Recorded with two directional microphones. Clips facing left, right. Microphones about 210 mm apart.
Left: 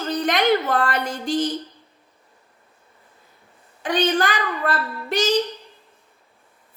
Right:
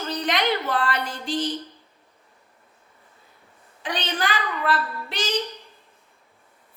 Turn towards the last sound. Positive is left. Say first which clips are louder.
# left 8 dB
turn(degrees=45)  # may be behind; listen again after turning